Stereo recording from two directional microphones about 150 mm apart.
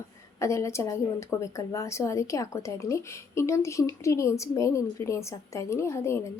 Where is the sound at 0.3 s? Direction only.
20° left (ahead or behind).